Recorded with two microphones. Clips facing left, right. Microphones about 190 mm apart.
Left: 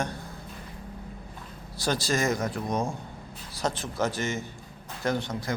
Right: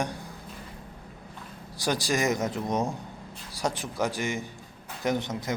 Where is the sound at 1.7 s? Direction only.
15° right (ahead or behind).